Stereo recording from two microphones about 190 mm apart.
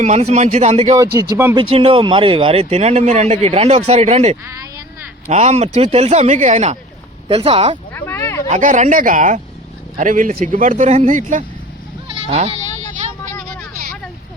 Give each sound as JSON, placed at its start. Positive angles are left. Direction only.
{"t": 0.0, "sound": "speech", "side_deg": -35}
{"t": 0.9, "sound": "speech", "side_deg": -20}
{"t": 1.5, "sound": "speech", "side_deg": -30}
{"t": 7.9, "sound": "a sound", "side_deg": 15}
{"t": 8.4, "sound": "speech", "side_deg": -40}
{"t": 12.3, "sound": "speech", "side_deg": -30}